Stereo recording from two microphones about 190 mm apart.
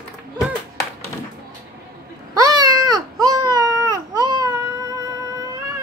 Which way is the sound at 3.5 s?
15° right (ahead or behind).